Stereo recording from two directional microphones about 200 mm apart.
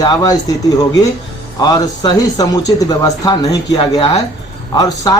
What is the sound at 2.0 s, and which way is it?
A man's voice, 20° left (ahead or behind).